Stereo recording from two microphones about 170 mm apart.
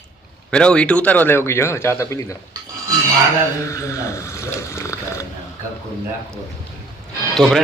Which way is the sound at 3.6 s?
15° left (ahead or behind).